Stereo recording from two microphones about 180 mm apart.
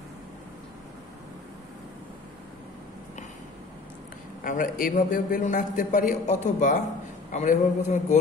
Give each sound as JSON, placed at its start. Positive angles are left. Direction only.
{"t": 4.4, "sound": "a man's voice", "side_deg": 50}